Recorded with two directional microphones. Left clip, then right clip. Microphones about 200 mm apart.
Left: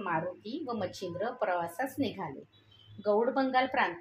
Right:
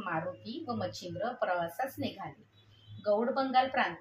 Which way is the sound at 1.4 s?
40° left (ahead or behind).